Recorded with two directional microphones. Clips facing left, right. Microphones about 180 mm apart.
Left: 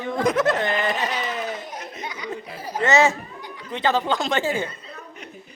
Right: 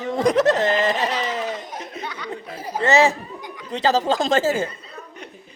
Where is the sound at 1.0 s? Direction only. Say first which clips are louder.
Right 3 dB; 30° right (ahead or behind).